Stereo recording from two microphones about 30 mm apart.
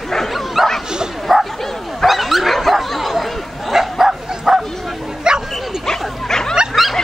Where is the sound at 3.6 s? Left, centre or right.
Centre.